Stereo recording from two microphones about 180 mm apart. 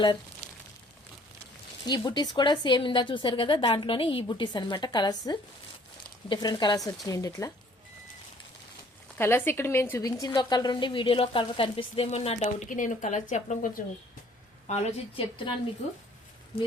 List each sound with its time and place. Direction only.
1.9 s a woman's voice: 25° left (ahead or behind)
9.1 s a woman's voice: 10° left (ahead or behind); by 13.8 s 45° left (ahead or behind)
14.7 s speech: 35° left (ahead or behind)